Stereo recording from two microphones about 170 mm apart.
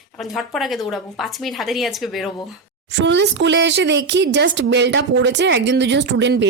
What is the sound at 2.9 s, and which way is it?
Speech, 90° right.